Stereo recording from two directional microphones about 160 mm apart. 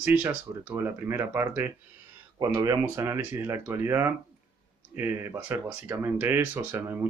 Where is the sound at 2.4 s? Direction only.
25° right (ahead or behind).